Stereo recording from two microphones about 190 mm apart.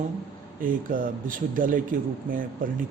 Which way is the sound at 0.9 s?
45° right (ahead or behind).